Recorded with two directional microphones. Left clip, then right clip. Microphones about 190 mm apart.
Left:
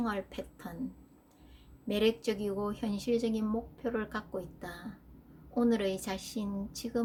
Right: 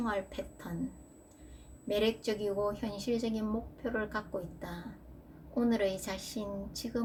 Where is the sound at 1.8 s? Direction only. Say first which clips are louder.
Left 1 dB; 40° left (ahead or behind).